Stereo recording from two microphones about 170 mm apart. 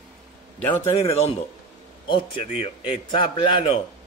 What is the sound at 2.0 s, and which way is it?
A man's voice, 30° left (ahead or behind).